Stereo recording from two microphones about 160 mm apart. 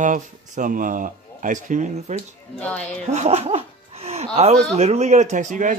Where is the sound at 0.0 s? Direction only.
55° right (ahead or behind).